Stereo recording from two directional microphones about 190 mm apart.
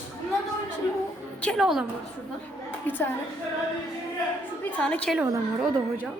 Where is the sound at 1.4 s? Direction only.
Centre (ahead or behind).